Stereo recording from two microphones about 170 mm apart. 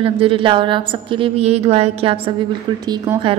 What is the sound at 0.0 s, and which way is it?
A woman's voice, 30° right (ahead or behind).